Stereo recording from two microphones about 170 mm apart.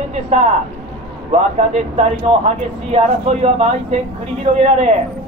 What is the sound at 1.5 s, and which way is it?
Speech, 40° right (ahead or behind).